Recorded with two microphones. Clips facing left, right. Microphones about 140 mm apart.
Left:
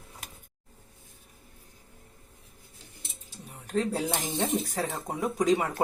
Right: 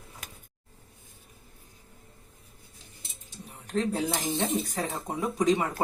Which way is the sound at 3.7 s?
10° left (ahead or behind).